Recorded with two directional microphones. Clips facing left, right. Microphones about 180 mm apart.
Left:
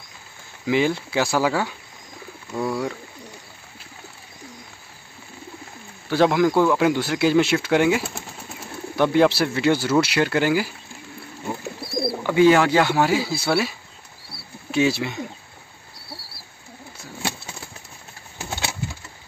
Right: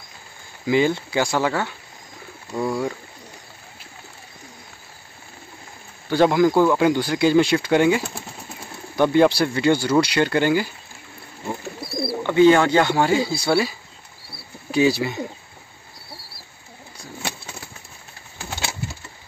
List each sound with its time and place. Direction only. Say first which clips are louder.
0.7 s speech: right 2 dB; centre (ahead or behind)
6.0 s speech: right 1 dB; centre (ahead or behind)
12.3 s speech: right 1 dB; 5° left (ahead or behind)